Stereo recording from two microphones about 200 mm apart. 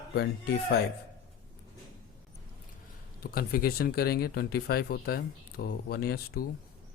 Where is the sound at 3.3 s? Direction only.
50° left (ahead or behind).